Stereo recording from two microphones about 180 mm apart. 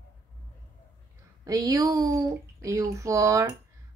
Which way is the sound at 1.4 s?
20° right (ahead or behind).